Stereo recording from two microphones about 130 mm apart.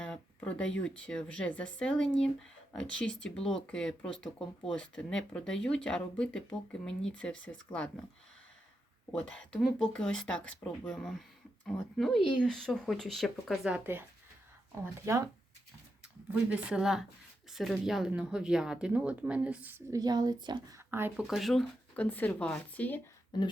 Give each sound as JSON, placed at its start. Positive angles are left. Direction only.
{"t": 0.0, "sound": "speech", "side_deg": 10}
{"t": 9.4, "sound": "speech", "side_deg": 5}
{"t": 15.0, "sound": "speech", "side_deg": -25}
{"t": 16.3, "sound": "a woman's voice", "side_deg": -10}
{"t": 19.9, "sound": "speech", "side_deg": -30}
{"t": 20.7, "sound": "speech", "side_deg": -20}
{"t": 21.2, "sound": "speech", "side_deg": 0}
{"t": 23.3, "sound": "speech", "side_deg": 30}